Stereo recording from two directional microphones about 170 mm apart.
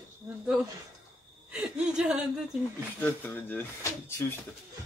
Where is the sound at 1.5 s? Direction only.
5° right (ahead or behind).